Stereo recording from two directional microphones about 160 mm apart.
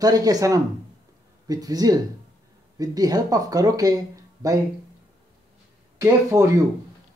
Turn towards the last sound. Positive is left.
turn(degrees=-20)  # may be behind; listen again after turning